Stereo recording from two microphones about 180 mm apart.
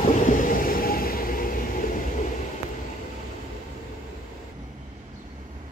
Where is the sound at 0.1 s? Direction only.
45° left (ahead or behind).